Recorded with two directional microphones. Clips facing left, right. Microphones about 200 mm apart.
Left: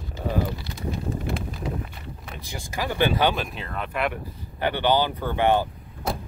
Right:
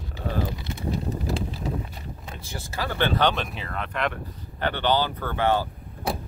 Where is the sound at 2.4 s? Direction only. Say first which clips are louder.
Left 2 dB; 15° left (ahead or behind).